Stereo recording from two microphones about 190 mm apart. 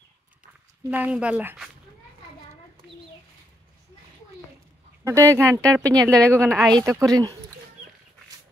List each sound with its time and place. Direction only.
0.8 s speech: 10° right (ahead or behind)
5.0 s speech: 15° right (ahead or behind)